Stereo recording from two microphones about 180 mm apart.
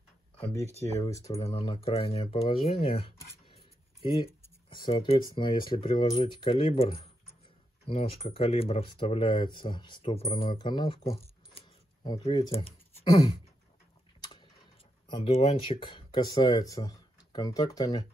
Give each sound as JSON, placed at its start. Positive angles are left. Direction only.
{"t": 0.7, "sound": "speech", "side_deg": -35}
{"t": 1.0, "sound": "speech", "side_deg": 15}
{"t": 1.5, "sound": "speech", "side_deg": 30}
{"t": 3.4, "sound": "a sound", "side_deg": 30}
{"t": 4.6, "sound": "speech", "side_deg": 25}
{"t": 15.0, "sound": "speech", "side_deg": 30}